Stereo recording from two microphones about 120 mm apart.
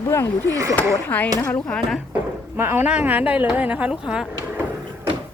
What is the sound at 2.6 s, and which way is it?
Speech, 20° right (ahead or behind).